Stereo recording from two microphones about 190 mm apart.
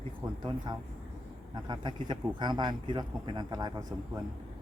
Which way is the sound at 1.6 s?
25° right (ahead or behind).